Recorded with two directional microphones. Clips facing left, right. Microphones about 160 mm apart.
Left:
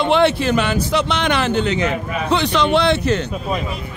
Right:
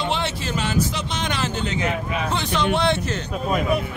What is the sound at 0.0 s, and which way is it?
A man's voice, 60° left (ahead or behind).